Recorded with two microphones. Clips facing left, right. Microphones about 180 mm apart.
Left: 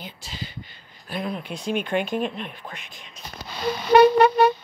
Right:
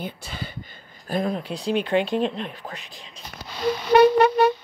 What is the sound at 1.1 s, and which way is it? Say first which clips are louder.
Speech: right 4 dB; 45° right (ahead or behind).